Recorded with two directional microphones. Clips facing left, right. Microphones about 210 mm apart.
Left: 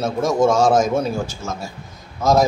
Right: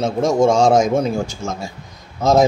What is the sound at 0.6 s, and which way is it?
Speech, 5° left (ahead or behind).